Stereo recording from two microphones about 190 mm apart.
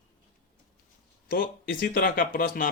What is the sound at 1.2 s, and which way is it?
Speech, 45° left (ahead or behind).